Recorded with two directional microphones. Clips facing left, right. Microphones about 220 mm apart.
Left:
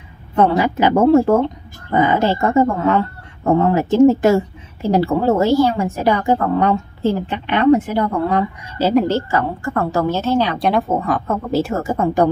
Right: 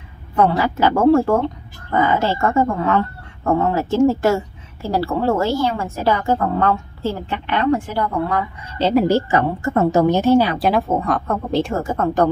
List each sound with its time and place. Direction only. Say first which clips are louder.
0.4 s a woman's voice: left 2 dB; 20° left (ahead or behind)
8.7 s a woman's voice: left 1 dB; 5° left (ahead or behind)
9.0 s a woman's voice: right 2 dB; 15° right (ahead or behind); by 12.3 s 10° left (ahead or behind)